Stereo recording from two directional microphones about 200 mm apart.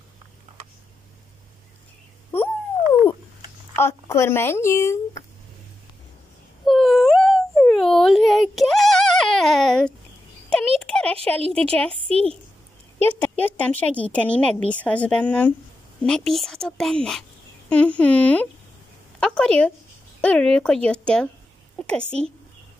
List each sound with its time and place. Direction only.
3.7 s speech: 10° left (ahead or behind)
6.6 s a sound: centre (ahead or behind)
11.2 s a woman's voice: 5° left (ahead or behind)
11.9 s a woman's voice: 30° right (ahead or behind)
13.0 s a woman's voice: 10° left (ahead or behind)